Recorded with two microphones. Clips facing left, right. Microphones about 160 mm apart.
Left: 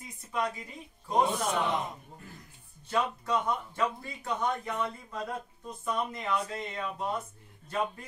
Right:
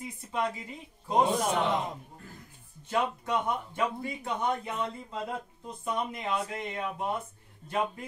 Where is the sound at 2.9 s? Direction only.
20° right (ahead or behind).